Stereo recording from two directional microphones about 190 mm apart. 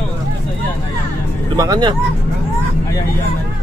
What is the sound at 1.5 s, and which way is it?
Speech, 20° right (ahead or behind).